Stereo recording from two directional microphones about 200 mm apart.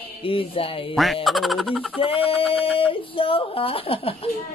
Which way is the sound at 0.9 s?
Centre (ahead or behind).